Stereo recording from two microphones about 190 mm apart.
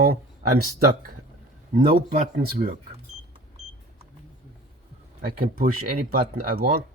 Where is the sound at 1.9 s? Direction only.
40° right (ahead or behind).